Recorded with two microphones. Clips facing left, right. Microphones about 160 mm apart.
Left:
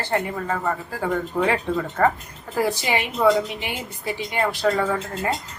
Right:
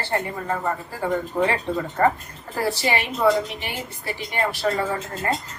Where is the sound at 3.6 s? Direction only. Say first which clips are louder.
Left 1 dB; 15° left (ahead or behind).